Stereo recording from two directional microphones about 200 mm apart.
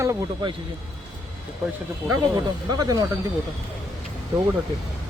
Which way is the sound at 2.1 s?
20° right (ahead or behind).